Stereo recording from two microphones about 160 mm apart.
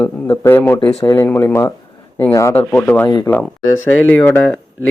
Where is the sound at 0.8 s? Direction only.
35° left (ahead or behind).